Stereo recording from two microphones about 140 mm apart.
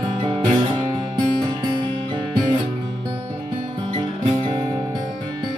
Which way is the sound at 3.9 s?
40° right (ahead or behind).